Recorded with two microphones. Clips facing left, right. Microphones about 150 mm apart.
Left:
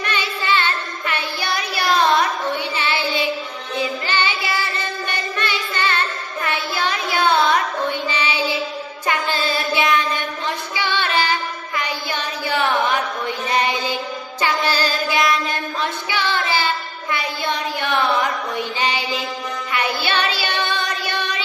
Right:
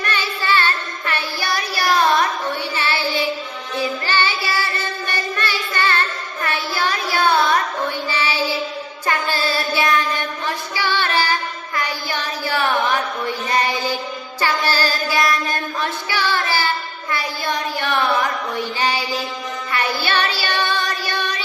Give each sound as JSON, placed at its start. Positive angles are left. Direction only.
{"t": 0.0, "sound": "music", "side_deg": 20}
{"t": 2.7, "sound": "child singing", "side_deg": 20}
{"t": 6.4, "sound": "a sound", "side_deg": 20}
{"t": 7.9, "sound": "child singing", "side_deg": 20}
{"t": 10.8, "sound": "singing", "side_deg": 20}
{"t": 11.8, "sound": "a sound", "side_deg": 20}
{"t": 14.4, "sound": "music", "side_deg": 20}
{"t": 16.0, "sound": "child singing", "side_deg": 20}
{"t": 17.1, "sound": "a sound", "side_deg": 20}
{"t": 18.5, "sound": "mantra", "side_deg": 20}
{"t": 19.7, "sound": "child singing", "side_deg": 15}